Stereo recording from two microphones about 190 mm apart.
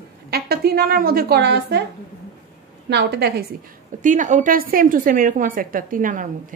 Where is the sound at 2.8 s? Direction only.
60° right (ahead or behind).